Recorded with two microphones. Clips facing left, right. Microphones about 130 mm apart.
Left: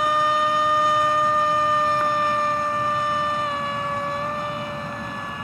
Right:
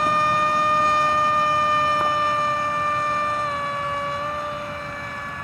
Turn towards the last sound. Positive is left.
turn(degrees=0)  # may be behind; listen again after turning